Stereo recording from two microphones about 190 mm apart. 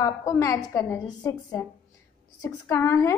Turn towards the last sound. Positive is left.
turn(degrees=15)  # may be behind; listen again after turning